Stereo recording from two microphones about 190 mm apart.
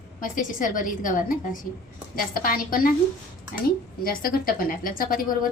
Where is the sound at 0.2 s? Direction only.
45° left (ahead or behind).